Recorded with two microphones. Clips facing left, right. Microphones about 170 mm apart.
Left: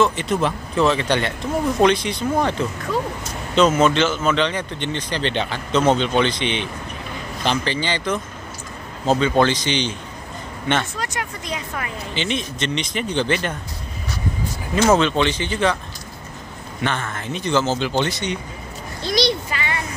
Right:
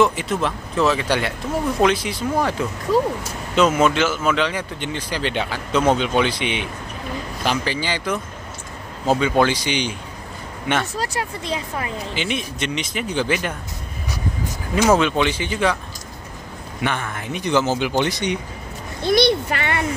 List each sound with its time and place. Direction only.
0.0 s speech: 5° right (ahead or behind)
11.0 s speech: 30° right (ahead or behind)
12.2 s speech: 10° right (ahead or behind)
14.8 s speech: 10° right (ahead or behind)
16.8 s speech: 10° right (ahead or behind)
19.0 s a child's voice: 55° right (ahead or behind)